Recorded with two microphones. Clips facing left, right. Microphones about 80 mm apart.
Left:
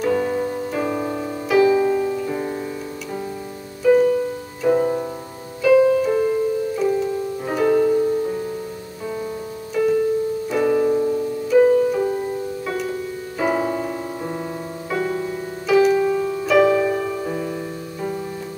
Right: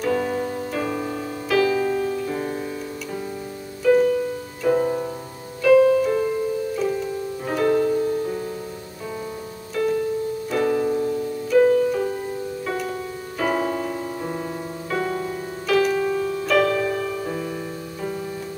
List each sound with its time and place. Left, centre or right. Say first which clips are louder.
0.0 s music: left 2 dB; centre
1.9 s piano: left 3 dB; centre
3.8 s music: left 2 dB; centre
9.8 s music: left 4 dB; centre
13.4 s piano: left 2 dB; centre
14.9 s music: left 2 dB; centre